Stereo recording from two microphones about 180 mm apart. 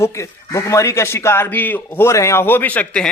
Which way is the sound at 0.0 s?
15° left (ahead or behind).